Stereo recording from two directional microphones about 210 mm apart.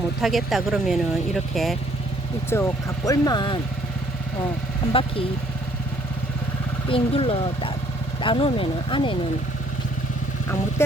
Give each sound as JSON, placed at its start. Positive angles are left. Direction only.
{"t": 0.2, "sound": "speech", "side_deg": 0}
{"t": 2.5, "sound": "speech", "side_deg": 15}
{"t": 4.9, "sound": "speech", "side_deg": 25}
{"t": 6.8, "sound": "speech", "side_deg": 25}
{"t": 10.8, "sound": "a sound", "side_deg": 10}